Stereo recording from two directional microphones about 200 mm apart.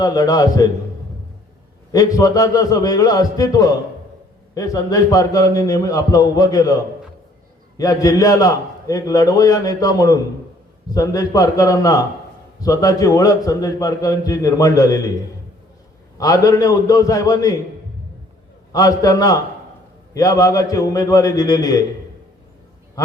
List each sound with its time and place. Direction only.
0.0 s a man's voice: 20° left (ahead or behind)
1.9 s a man's voice: 20° left (ahead or behind)
7.8 s a man's voice: 15° left (ahead or behind)
16.1 s a man's voice: 15° left (ahead or behind)
18.7 s a man's voice: 20° left (ahead or behind)